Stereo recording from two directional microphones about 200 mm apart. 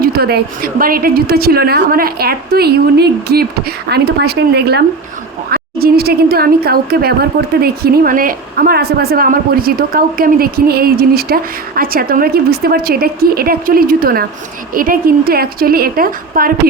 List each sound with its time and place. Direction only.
0.0 s a woman's voice: 50° right (ahead or behind)